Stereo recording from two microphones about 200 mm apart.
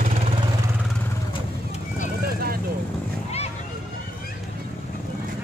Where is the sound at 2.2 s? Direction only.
50° right (ahead or behind).